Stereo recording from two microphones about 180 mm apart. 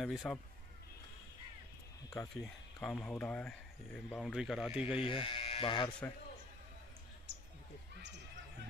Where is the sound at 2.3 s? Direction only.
5° left (ahead or behind).